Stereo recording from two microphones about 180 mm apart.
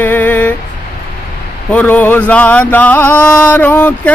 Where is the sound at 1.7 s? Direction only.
10° left (ahead or behind).